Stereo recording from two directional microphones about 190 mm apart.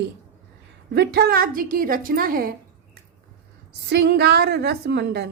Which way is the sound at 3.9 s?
60° right (ahead or behind).